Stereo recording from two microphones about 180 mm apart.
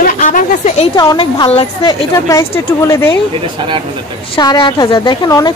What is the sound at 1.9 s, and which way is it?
Speech, 15° left (ahead or behind).